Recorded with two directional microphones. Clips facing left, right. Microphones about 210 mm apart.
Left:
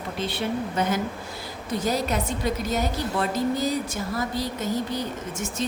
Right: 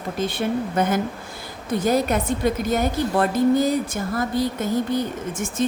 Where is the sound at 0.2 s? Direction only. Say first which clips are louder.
Right 4 dB; 50° right (ahead or behind).